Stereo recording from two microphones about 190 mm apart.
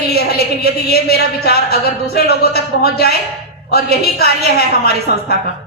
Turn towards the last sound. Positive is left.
turn(degrees=55)  # may be behind; listen again after turning